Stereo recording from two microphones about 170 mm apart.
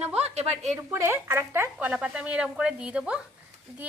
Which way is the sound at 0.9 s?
15° right (ahead or behind).